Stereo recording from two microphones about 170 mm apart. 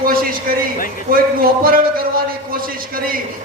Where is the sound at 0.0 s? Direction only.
55° right (ahead or behind).